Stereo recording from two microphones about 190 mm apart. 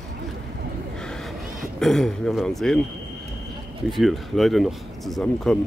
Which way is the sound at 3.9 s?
Centre (ahead or behind).